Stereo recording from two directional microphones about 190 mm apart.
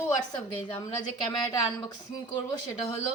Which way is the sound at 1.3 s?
20° left (ahead or behind).